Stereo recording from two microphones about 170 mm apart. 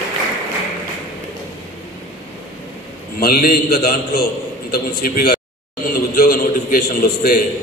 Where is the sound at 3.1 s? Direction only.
60° left (ahead or behind).